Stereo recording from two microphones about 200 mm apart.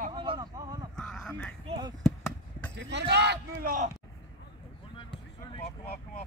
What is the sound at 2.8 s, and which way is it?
Speech, 60° right (ahead or behind).